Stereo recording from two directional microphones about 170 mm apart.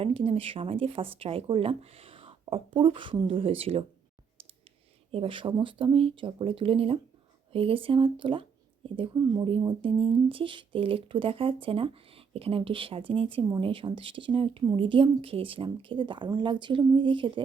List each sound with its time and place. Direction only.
0.0 s speech: 35° right (ahead or behind)
5.1 s speech: 30° right (ahead or behind)